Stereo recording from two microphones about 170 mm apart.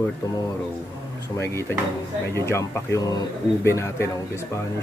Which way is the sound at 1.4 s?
15° left (ahead or behind).